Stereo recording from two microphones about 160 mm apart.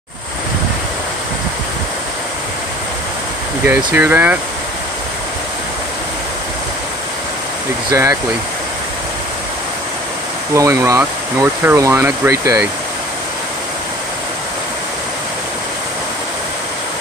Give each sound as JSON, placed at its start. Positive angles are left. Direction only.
{"t": 3.6, "sound": "speech", "side_deg": -10}
{"t": 7.9, "sound": "speech", "side_deg": -20}
{"t": 10.5, "sound": "speech", "side_deg": -20}